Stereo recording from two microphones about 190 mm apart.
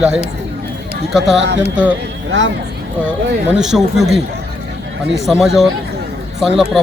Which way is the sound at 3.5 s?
5° right (ahead or behind).